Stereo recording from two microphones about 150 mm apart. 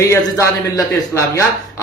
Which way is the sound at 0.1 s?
20° left (ahead or behind).